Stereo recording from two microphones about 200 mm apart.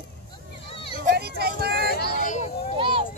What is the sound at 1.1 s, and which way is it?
Children playing, 50° right (ahead or behind).